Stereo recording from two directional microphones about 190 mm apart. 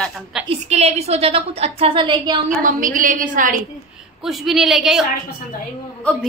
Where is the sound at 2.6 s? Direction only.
45° right (ahead or behind).